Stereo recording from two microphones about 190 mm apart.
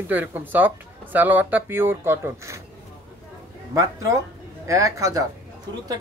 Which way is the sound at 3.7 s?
15° right (ahead or behind).